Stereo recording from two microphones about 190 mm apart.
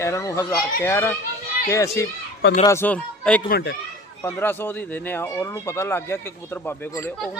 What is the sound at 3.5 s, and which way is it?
Speech, 55° left (ahead or behind).